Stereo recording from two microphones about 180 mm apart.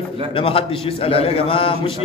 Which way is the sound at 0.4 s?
30° left (ahead or behind).